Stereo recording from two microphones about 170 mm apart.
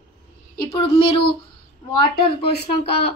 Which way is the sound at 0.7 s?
35° left (ahead or behind).